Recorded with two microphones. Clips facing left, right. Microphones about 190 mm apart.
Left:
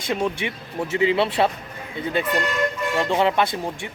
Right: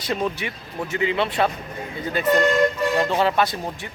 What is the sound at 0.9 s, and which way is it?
Speech, 30° left (ahead or behind).